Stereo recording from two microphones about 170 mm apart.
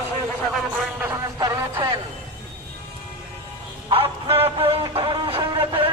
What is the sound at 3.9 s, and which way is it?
Music, 35° right (ahead or behind).